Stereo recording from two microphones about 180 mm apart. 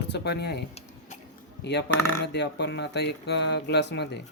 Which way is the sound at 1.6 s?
70° left (ahead or behind).